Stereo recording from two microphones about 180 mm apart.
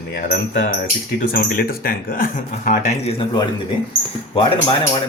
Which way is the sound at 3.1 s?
25° left (ahead or behind).